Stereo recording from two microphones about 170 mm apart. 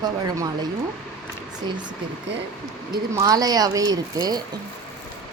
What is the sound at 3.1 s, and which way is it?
Speech, 20° right (ahead or behind).